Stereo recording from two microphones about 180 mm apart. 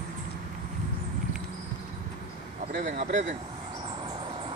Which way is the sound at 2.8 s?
40° right (ahead or behind).